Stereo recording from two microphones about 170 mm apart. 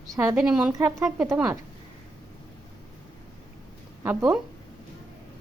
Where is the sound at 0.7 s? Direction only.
15° right (ahead or behind).